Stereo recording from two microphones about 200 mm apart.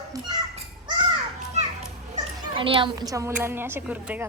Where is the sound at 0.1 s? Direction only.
20° right (ahead or behind).